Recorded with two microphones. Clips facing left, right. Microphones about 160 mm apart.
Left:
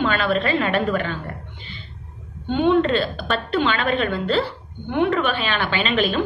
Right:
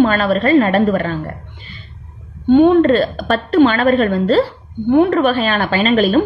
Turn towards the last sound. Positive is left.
turn(degrees=-40)  # may be behind; listen again after turning